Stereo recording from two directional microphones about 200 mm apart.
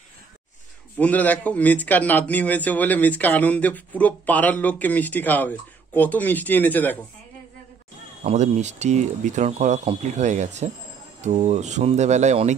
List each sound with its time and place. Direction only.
0.9 s a man's voice: 10° left (ahead or behind)
8.2 s speech: 35° right (ahead or behind)